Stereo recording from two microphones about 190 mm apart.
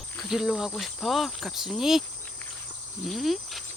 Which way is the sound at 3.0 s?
Centre (ahead or behind).